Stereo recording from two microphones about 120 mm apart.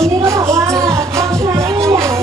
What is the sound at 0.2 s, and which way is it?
Music, 25° right (ahead or behind).